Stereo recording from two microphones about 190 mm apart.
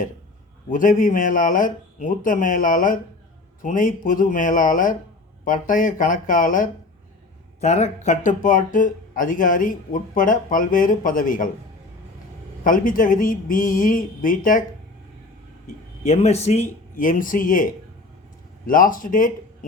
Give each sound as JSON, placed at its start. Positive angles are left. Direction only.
{"t": 0.7, "sound": "speech", "side_deg": 45}
{"t": 12.6, "sound": "speech", "side_deg": 45}
{"t": 16.0, "sound": "speech", "side_deg": 35}
{"t": 16.9, "sound": "speech", "side_deg": 45}